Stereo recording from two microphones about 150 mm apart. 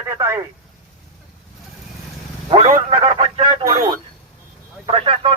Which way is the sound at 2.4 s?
40° right (ahead or behind).